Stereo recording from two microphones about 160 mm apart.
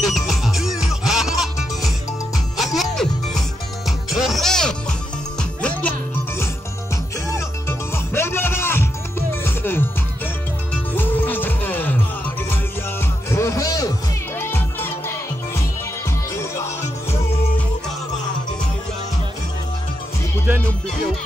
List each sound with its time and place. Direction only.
0.0 s music: centre (ahead or behind)
13.3 s music: 20° left (ahead or behind)